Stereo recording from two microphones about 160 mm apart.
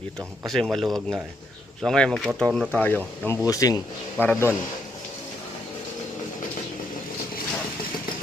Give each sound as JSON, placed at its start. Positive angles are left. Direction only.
{"t": 0.4, "sound": "speech", "side_deg": 0}
{"t": 3.2, "sound": "a man's voice", "side_deg": 20}